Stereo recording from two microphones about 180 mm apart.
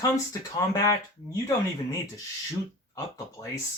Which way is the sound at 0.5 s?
20° left (ahead or behind).